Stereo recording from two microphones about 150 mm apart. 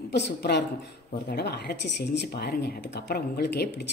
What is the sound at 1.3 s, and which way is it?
Speech, 90° left.